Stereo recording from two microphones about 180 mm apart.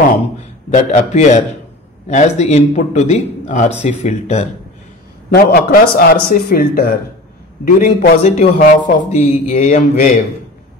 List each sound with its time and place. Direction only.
0.7 s speech: 40° left (ahead or behind)
5.3 s a man's voice: 60° left (ahead or behind)
8.2 s speech: 40° left (ahead or behind)